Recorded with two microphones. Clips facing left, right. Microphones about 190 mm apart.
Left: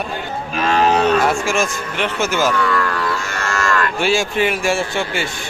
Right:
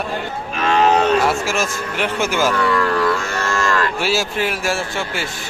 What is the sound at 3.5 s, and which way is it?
Cattle, 30° right (ahead or behind).